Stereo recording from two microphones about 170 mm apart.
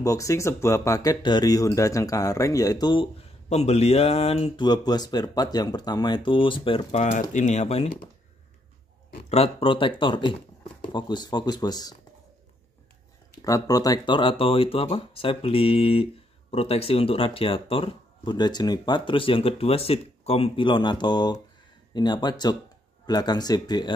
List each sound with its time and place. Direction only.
0.0 s speech: 20° left (ahead or behind)
3.4 s speech: 40° left (ahead or behind)
9.3 s speech: 35° left (ahead or behind)
13.4 s speech: 20° left (ahead or behind)